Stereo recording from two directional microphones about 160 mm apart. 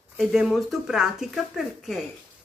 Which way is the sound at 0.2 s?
Centre (ahead or behind).